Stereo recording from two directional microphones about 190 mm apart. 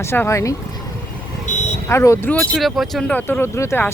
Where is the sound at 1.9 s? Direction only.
15° left (ahead or behind).